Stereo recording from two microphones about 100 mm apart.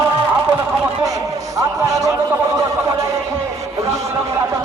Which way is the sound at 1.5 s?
35° right (ahead or behind).